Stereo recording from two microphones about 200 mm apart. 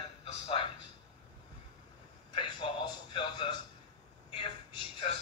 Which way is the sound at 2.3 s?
25° left (ahead or behind).